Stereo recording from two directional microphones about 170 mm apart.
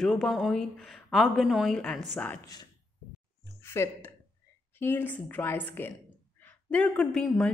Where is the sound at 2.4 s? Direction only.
20° left (ahead or behind).